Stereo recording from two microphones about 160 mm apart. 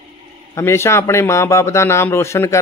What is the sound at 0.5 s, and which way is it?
A man's voice, 15° left (ahead or behind).